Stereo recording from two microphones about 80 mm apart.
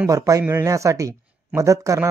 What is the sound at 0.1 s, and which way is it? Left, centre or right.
Speech, right.